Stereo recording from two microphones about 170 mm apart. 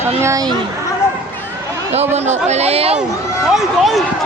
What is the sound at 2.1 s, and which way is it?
Speech, 40° right (ahead or behind).